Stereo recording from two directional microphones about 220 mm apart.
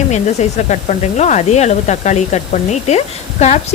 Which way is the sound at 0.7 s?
35° left (ahead or behind).